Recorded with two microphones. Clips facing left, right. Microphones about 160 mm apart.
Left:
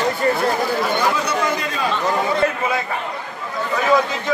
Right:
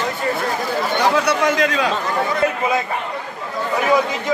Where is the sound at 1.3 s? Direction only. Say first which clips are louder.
Right 4 dB; 90° right.